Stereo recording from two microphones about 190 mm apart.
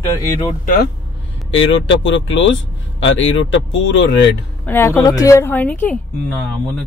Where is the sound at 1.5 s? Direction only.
80° left.